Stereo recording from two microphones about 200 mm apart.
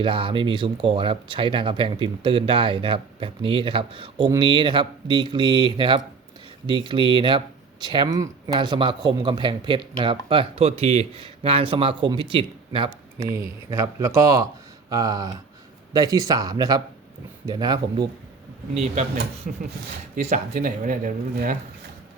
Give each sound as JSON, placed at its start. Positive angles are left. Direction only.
{"t": 0.0, "sound": "speech", "side_deg": -25}
{"t": 13.1, "sound": "speech", "side_deg": -15}
{"t": 19.5, "sound": "speech", "side_deg": -40}